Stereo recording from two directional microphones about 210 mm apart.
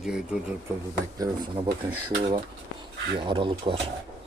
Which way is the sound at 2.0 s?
25° right (ahead or behind).